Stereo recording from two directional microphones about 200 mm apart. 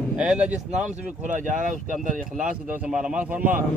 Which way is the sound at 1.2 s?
40° right (ahead or behind).